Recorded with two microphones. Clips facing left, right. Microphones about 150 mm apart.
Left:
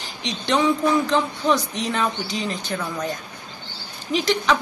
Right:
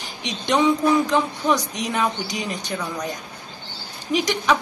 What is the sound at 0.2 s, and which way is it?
Speech, 15° right (ahead or behind).